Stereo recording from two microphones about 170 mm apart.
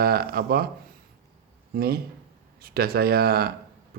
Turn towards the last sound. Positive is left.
turn(degrees=-65)  # may be behind; listen again after turning